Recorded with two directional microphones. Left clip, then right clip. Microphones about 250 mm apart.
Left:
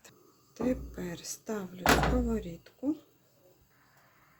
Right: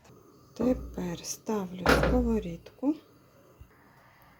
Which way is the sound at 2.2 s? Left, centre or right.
Centre.